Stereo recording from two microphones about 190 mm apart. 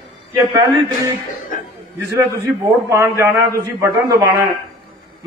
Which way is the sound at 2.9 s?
15° right (ahead or behind).